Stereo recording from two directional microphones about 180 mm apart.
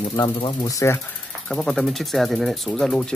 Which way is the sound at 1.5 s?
5° left (ahead or behind).